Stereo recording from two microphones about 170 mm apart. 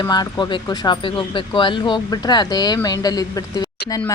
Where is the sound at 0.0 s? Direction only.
25° left (ahead or behind).